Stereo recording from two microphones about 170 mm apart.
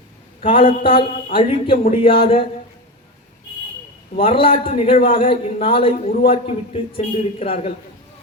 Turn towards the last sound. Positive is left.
turn(degrees=35)  # may be behind; listen again after turning